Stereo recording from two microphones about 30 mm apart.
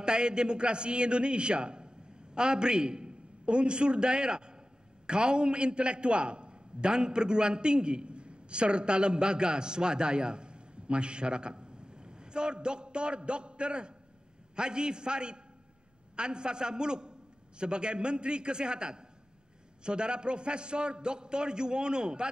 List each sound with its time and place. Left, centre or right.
0.0 s a man's voice: right